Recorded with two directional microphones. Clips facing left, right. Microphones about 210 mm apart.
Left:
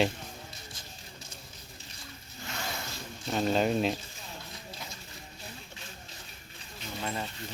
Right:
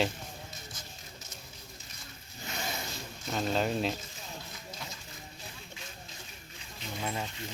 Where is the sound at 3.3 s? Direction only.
5° left (ahead or behind).